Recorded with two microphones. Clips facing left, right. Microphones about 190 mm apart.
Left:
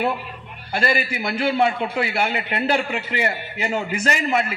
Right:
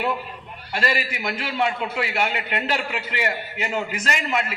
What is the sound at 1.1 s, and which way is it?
Speech, 35° left (ahead or behind).